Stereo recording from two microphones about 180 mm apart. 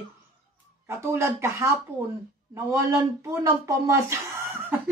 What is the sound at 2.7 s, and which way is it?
Speech, 15° right (ahead or behind).